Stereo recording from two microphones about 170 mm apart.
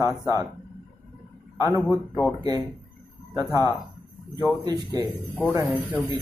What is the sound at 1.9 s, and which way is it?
Speech, 10° left (ahead or behind).